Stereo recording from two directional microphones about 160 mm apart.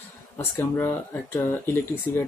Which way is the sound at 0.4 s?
15° left (ahead or behind).